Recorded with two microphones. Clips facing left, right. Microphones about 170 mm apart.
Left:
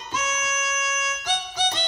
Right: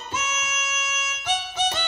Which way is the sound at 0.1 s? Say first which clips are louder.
Left 3 dB; 25° right (ahead or behind).